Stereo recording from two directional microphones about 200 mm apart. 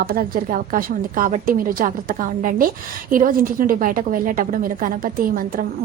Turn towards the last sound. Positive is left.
turn(degrees=-45)  # may be behind; listen again after turning